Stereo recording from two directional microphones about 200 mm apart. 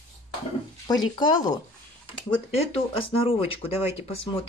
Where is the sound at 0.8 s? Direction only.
20° left (ahead or behind).